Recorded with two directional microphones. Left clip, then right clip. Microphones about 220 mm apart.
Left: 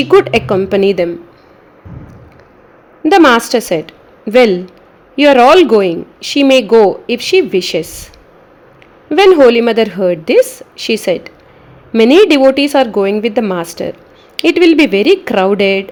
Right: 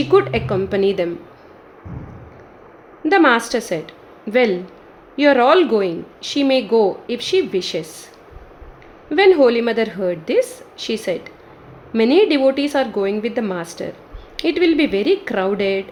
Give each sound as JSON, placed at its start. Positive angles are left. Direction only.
{"t": 0.1, "sound": "a woman's voice", "side_deg": 35}
{"t": 3.0, "sound": "a woman's voice", "side_deg": 30}
{"t": 9.0, "sound": "a woman's voice", "side_deg": 30}